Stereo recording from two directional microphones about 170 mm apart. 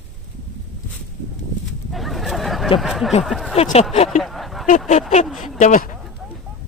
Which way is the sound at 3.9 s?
40° left (ahead or behind).